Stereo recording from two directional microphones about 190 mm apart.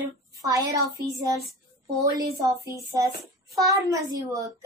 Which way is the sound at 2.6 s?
15° right (ahead or behind).